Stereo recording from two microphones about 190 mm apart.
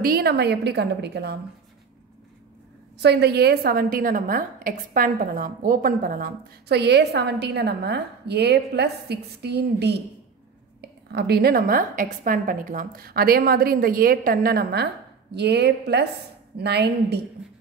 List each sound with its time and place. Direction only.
0.0 s a woman's voice: 55° right (ahead or behind)
3.0 s a woman's voice: 60° right (ahead or behind)